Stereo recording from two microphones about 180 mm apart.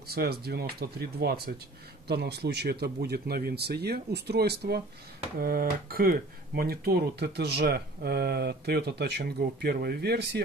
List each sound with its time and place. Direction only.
0.1 s speech: 60° right (ahead or behind)